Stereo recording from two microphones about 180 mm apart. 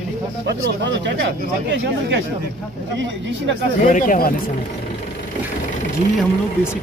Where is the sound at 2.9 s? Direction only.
90° right.